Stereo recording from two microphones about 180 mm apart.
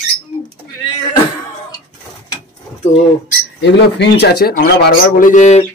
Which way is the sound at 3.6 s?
70° left (ahead or behind).